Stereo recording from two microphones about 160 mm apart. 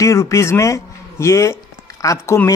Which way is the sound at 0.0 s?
20° left (ahead or behind).